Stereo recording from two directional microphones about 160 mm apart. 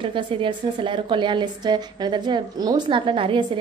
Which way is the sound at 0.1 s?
30° right (ahead or behind).